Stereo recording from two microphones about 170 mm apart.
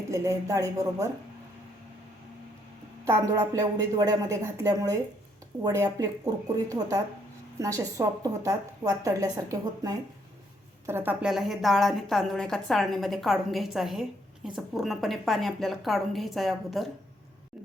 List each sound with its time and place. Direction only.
0.1 s a woman's voice: 20° right (ahead or behind)
3.1 s a woman's voice: 20° right (ahead or behind); by 16.9 s centre (ahead or behind)